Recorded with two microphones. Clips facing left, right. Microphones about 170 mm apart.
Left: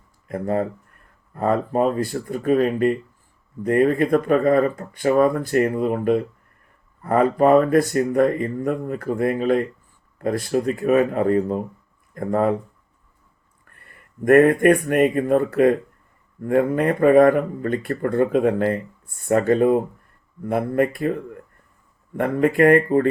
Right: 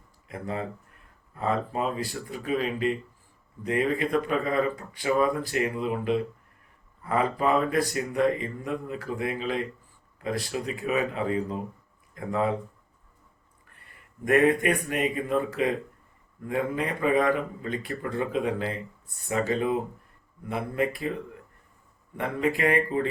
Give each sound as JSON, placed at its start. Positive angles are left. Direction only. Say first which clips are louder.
{"t": 0.3, "sound": "speech", "louder": "left 10 dB", "side_deg": 50}
{"t": 13.7, "sound": "speech", "louder": "left 10 dB", "side_deg": 55}
{"t": 22.2, "sound": "speech", "louder": "left 9 dB", "side_deg": 50}